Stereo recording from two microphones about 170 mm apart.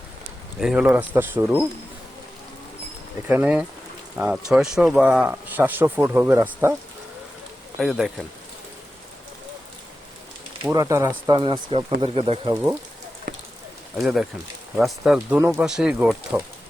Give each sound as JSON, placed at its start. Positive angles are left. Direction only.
{"t": 0.6, "sound": "speech", "side_deg": -5}
{"t": 3.2, "sound": "speech", "side_deg": -10}
{"t": 7.8, "sound": "speech", "side_deg": 0}
{"t": 10.6, "sound": "speech", "side_deg": -20}
{"t": 11.3, "sound": "speech", "side_deg": -30}
{"t": 13.9, "sound": "speech", "side_deg": 0}